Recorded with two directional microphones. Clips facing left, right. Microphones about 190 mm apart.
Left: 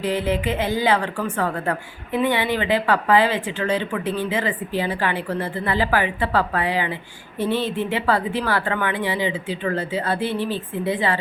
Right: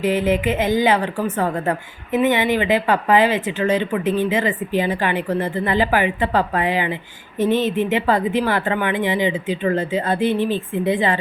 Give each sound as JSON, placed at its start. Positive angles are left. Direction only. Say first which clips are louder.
{"t": 0.3, "sound": "a woman's voice", "louder": "right 4 dB", "side_deg": -15}